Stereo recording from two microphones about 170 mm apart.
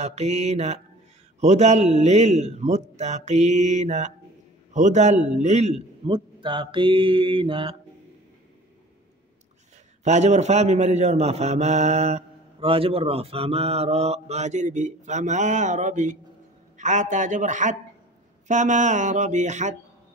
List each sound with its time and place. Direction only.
0.0 s a man's voice: 40° right (ahead or behind)
10.0 s a man's voice: 40° right (ahead or behind)